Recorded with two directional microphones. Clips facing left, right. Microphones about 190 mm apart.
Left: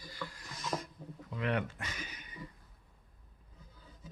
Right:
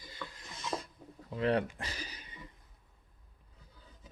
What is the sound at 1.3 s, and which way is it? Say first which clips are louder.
Speech: right 4 dB; 35° right (ahead or behind).